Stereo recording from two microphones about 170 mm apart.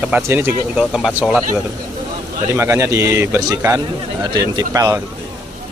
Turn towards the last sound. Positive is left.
turn(degrees=-20)  # may be behind; listen again after turning